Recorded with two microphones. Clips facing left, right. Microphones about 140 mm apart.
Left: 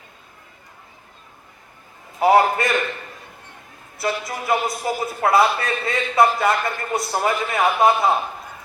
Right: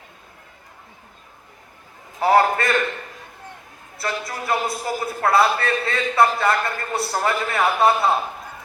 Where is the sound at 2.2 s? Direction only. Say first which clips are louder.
Left 1 dB; 20° left (ahead or behind).